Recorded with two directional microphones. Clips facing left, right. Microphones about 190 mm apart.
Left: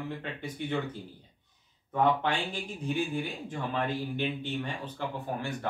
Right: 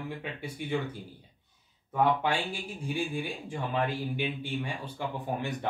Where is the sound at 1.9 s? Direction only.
10° right (ahead or behind).